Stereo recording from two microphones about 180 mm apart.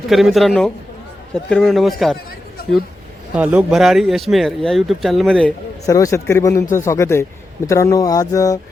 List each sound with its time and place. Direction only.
0.1 s speech: centre (ahead or behind)
3.3 s speech: 5° right (ahead or behind)
5.8 s speech: 20° left (ahead or behind)